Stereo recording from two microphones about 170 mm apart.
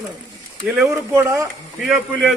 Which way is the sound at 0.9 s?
15° right (ahead or behind).